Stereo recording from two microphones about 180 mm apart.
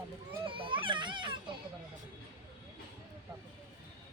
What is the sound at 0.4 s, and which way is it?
Baby cry, 30° right (ahead or behind).